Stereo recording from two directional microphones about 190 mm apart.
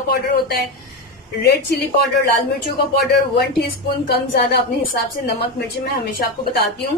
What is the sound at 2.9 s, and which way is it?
A woman's voice, 55° left (ahead or behind).